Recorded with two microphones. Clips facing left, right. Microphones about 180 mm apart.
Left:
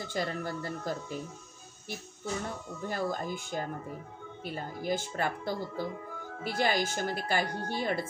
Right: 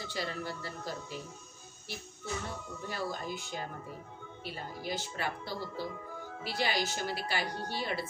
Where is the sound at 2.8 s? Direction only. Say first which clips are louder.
Left 5 dB; 45° left (ahead or behind).